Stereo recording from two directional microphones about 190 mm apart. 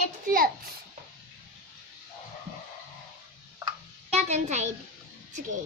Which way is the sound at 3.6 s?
35° right (ahead or behind).